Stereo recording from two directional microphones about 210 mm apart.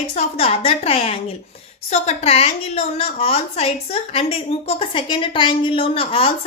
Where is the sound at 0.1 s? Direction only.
30° left (ahead or behind).